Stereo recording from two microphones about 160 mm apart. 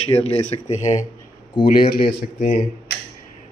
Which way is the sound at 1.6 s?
65° left (ahead or behind).